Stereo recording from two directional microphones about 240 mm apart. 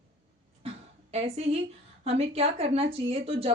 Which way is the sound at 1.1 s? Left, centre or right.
Right.